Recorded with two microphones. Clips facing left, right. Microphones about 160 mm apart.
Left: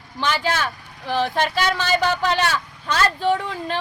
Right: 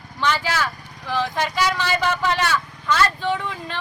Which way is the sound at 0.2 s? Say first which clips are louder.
Even; 25° left (ahead or behind).